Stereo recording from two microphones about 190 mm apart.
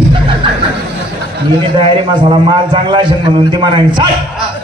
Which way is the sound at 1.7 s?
25° right (ahead or behind).